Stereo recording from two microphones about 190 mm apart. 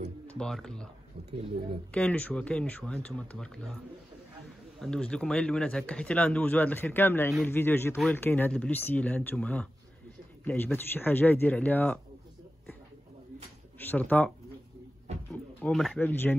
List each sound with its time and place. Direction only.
0.3 s speech: 5° left (ahead or behind)
1.3 s speech: 30° right (ahead or behind)
1.9 s speech: 5° left (ahead or behind)
4.7 s speech: 5° left (ahead or behind)
13.7 s speech: 10° left (ahead or behind)
15.6 s speech: 5° left (ahead or behind)